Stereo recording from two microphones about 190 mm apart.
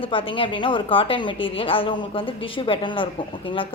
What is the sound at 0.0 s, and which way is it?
A woman's voice, 30° left (ahead or behind).